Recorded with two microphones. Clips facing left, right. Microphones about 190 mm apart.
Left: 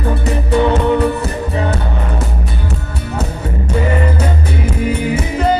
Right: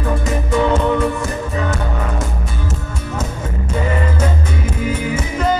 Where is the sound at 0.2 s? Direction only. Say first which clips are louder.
Left 4 dB; 35° left (ahead or behind).